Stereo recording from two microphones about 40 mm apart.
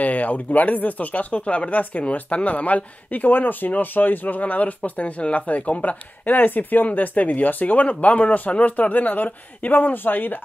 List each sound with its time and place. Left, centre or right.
0.0 s speech: left
6.9 s speech: left